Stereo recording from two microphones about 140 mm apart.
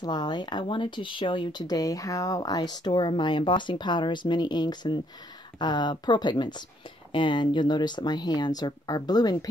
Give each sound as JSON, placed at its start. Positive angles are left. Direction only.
{"t": 0.0, "sound": "speech", "side_deg": 30}